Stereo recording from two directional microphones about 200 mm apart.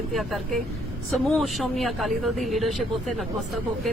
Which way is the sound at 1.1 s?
Centre (ahead or behind).